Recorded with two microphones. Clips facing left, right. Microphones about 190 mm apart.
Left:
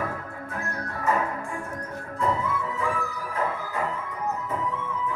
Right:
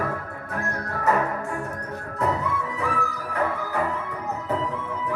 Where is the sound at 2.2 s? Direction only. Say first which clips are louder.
Right 1 dB; 70° right (ahead or behind).